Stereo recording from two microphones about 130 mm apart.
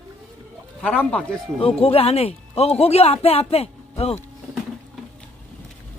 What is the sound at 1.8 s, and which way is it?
Speech, 50° left (ahead or behind).